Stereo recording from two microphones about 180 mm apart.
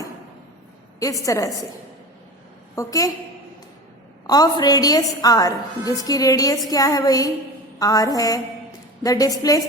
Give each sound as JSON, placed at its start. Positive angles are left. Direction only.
{"t": 1.2, "sound": "a woman's voice", "side_deg": 20}
{"t": 2.7, "sound": "a woman's voice", "side_deg": 20}
{"t": 4.3, "sound": "a woman's voice", "side_deg": 20}